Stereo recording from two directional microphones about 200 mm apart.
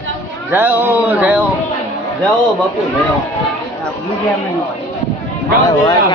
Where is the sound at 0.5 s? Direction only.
10° right (ahead or behind).